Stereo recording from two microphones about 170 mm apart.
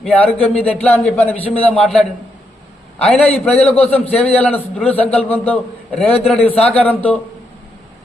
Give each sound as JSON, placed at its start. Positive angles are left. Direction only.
{"t": 0.0, "sound": "a man's voice", "side_deg": 10}
{"t": 4.1, "sound": "a man's voice", "side_deg": 35}
{"t": 4.4, "sound": "speech", "side_deg": 5}